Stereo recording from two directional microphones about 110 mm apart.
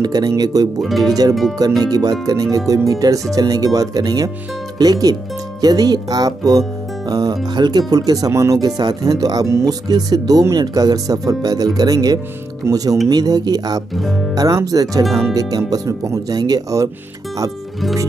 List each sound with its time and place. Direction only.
0.0 s speech: 35° right (ahead or behind)
0.7 s speech: centre (ahead or behind)
1.8 s speech: 35° right (ahead or behind)
13.9 s speech: centre (ahead or behind)
14.3 s speech: 35° right (ahead or behind)
15.0 s speech: centre (ahead or behind)
15.3 s speech: 35° right (ahead or behind)